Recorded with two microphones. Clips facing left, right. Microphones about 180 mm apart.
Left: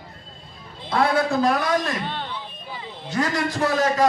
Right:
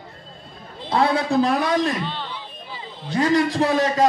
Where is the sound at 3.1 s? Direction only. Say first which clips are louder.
Right 5 dB; 30° right (ahead or behind).